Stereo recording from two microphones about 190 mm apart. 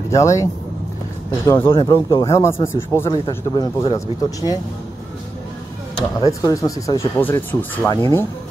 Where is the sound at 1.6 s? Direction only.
25° left (ahead or behind).